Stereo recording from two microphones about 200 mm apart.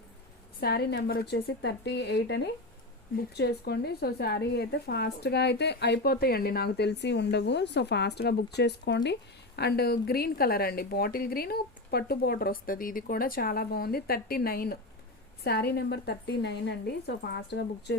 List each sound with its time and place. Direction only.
0.6 s a woman's voice: 50° left (ahead or behind)